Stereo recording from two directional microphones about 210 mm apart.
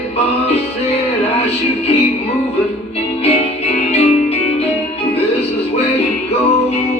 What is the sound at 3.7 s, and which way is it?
Music, 30° left (ahead or behind).